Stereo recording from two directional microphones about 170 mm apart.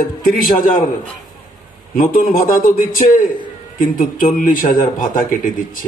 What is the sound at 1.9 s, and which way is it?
A man's voice, 50° left (ahead or behind).